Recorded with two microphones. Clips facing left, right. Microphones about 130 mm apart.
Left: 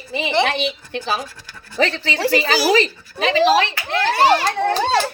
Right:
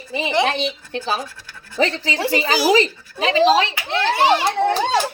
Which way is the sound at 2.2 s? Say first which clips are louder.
Left 1 dB; 20° right (ahead or behind).